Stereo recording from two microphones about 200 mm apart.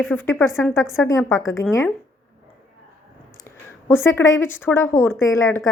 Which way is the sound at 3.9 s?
10° left (ahead or behind).